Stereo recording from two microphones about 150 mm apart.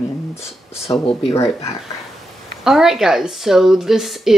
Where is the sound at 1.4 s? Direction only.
20° left (ahead or behind).